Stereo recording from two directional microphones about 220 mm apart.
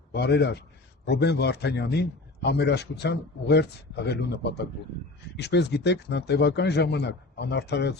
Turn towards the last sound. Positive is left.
turn(degrees=50)  # may be behind; listen again after turning